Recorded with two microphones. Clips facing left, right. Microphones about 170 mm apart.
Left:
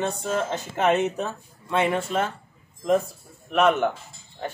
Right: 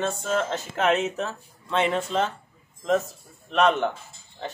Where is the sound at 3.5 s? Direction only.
10° left (ahead or behind).